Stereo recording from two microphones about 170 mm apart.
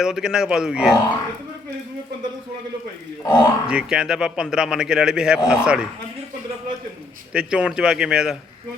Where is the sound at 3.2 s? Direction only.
20° left (ahead or behind).